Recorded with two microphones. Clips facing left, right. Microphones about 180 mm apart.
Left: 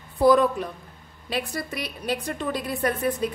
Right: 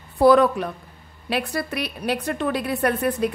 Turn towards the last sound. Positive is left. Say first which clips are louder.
# right 3 dB
turn(degrees=-65)  # may be behind; listen again after turning